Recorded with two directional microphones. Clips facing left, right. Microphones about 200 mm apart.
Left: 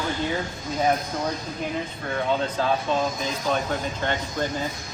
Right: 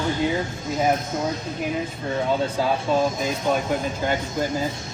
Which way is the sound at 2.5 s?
10° right (ahead or behind).